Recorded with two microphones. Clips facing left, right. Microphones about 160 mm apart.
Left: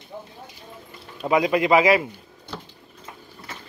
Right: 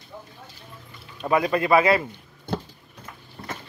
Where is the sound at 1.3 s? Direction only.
15° left (ahead or behind).